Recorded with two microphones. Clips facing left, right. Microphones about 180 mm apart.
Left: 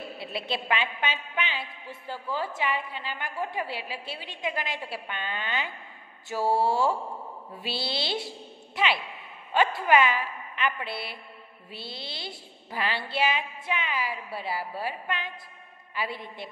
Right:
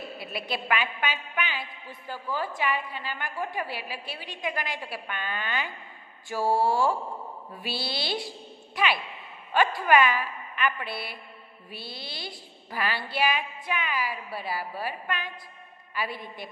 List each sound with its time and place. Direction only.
0.2 s a woman's voice: 25° left (ahead or behind)